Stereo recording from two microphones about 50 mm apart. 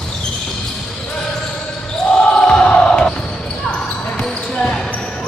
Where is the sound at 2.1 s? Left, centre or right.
Left.